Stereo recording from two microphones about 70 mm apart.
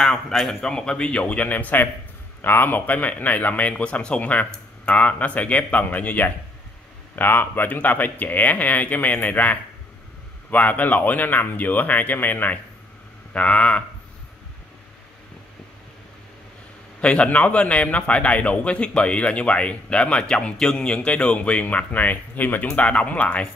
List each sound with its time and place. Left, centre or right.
0.0 s a man's voice: centre
17.0 s a man's voice: centre